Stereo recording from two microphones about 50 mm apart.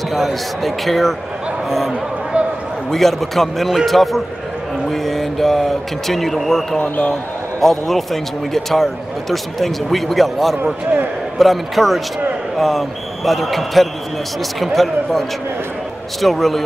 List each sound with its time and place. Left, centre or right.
0.1 s speech: centre
2.3 s basketball bounce: right
2.9 s speech: centre
6.8 s speech: left
7.6 s speech: centre